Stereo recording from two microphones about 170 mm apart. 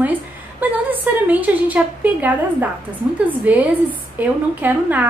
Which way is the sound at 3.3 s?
10° right (ahead or behind).